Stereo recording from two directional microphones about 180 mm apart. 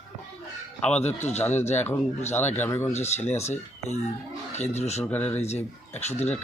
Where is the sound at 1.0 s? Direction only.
40° left (ahead or behind).